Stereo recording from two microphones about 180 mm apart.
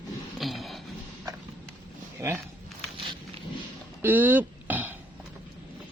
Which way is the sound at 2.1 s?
15° right (ahead or behind).